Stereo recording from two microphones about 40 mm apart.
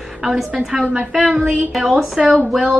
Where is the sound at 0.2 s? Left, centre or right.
Centre.